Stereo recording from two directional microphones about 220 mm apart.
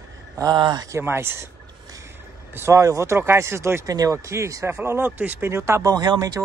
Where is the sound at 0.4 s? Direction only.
20° right (ahead or behind).